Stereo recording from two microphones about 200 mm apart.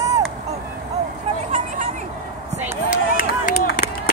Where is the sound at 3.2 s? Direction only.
40° left (ahead or behind).